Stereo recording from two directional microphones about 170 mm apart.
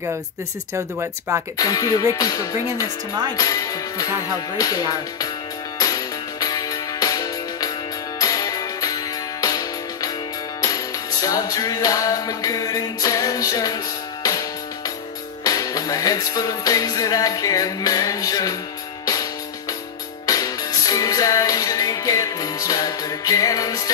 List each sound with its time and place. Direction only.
0.7 s speech: 15° right (ahead or behind)
1.6 s music: 20° left (ahead or behind)
15.4 s music: 20° left (ahead or behind)
20.2 s music: 20° left (ahead or behind)